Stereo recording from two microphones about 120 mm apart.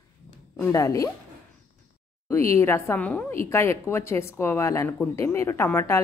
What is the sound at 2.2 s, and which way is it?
A woman's voice, 25° left (ahead or behind).